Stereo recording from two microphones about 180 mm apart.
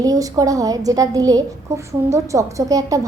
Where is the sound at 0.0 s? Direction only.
20° right (ahead or behind).